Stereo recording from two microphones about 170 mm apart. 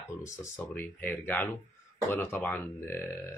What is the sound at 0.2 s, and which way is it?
Speech, 15° left (ahead or behind).